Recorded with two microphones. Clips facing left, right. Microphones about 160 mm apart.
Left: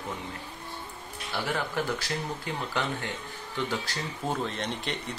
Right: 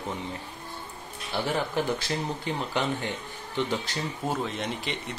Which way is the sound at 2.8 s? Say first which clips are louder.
Right 3 dB; 20° right (ahead or behind).